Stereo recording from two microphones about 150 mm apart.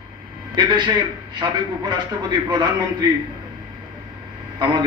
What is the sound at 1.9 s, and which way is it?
Speech, 30° right (ahead or behind).